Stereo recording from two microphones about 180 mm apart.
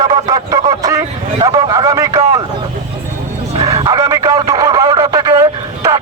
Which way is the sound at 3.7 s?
25° right (ahead or behind).